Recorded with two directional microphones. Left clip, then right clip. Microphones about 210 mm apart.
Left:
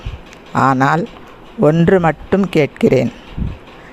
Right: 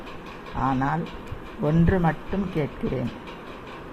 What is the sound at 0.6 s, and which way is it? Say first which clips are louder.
Speech: left 12 dB; 55° left (ahead or behind).